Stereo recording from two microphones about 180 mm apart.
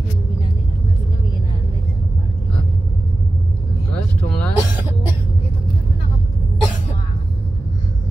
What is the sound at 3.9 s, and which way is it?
Vehicle, 5° left (ahead or behind).